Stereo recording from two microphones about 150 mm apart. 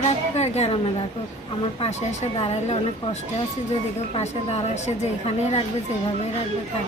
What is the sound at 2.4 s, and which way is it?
A woman's voice, 45° left (ahead or behind).